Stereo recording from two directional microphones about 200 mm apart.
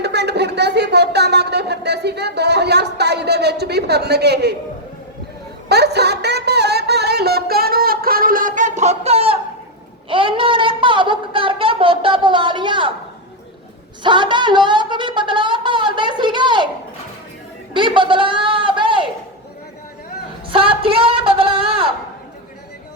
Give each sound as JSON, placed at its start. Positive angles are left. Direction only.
{"t": 0.0, "sound": "speech", "side_deg": -55}
{"t": 5.6, "sound": "music", "side_deg": -55}
{"t": 10.1, "sound": "a woman's voice", "side_deg": -25}
{"t": 14.0, "sound": "a woman's voice", "side_deg": -25}
{"t": 17.7, "sound": "a sound", "side_deg": -25}
{"t": 20.5, "sound": "a sound", "side_deg": -25}